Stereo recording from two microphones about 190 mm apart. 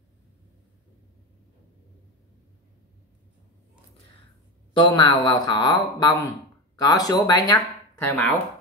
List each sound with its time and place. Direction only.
4.7 s speech: 25° left (ahead or behind)